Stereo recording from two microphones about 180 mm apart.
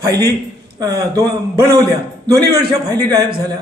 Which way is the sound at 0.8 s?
20° right (ahead or behind).